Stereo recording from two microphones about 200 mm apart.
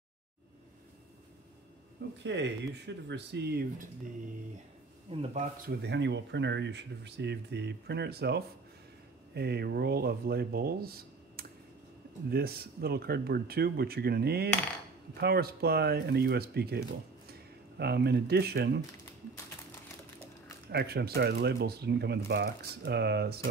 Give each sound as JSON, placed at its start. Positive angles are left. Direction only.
{"t": 2.2, "sound": "speech", "side_deg": -60}
{"t": 5.1, "sound": "speech", "side_deg": -35}
{"t": 5.7, "sound": "speech", "side_deg": -55}
{"t": 20.7, "sound": "speech", "side_deg": -50}